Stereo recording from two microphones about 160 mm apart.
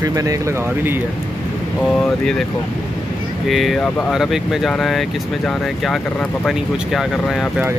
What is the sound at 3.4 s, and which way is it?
Speech, centre (ahead or behind).